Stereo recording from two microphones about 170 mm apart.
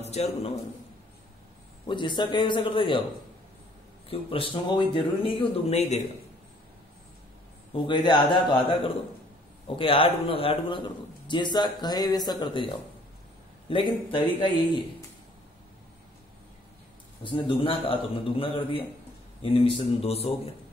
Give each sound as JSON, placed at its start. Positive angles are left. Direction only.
{"t": 0.0, "sound": "a man's voice", "side_deg": 40}
{"t": 1.9, "sound": "a man's voice", "side_deg": 30}
{"t": 4.1, "sound": "speech", "side_deg": 30}
{"t": 7.7, "sound": "a man's voice", "side_deg": 30}
{"t": 17.2, "sound": "speech", "side_deg": 30}